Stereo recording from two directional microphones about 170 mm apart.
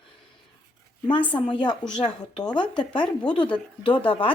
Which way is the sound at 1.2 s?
10° left (ahead or behind).